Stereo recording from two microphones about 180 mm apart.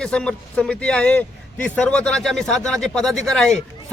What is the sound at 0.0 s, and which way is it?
A man's voice, 5° left (ahead or behind).